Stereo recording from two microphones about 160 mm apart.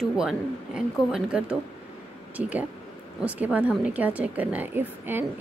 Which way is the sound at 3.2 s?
10° right (ahead or behind).